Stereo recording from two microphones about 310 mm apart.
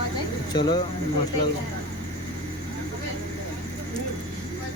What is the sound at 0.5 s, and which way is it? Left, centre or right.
Speech, centre.